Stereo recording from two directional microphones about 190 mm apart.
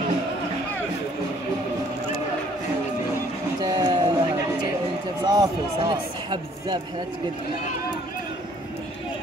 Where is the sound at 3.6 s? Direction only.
20° right (ahead or behind).